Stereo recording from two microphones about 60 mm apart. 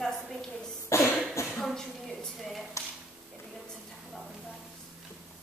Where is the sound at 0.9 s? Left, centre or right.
Left.